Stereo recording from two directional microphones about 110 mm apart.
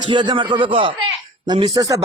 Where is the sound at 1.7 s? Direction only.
30° right (ahead or behind).